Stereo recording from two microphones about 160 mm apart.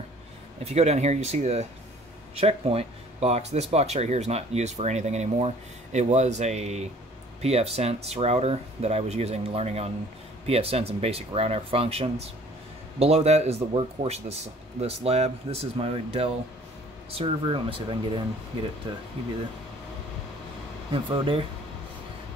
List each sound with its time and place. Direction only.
0.7 s speech: 45° right (ahead or behind)
20.9 s speech: 35° right (ahead or behind)